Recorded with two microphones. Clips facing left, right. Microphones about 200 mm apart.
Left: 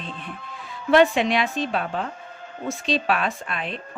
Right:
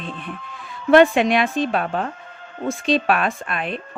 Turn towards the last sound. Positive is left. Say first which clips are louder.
# right 4 dB
turn(degrees=-55)  # may be behind; listen again after turning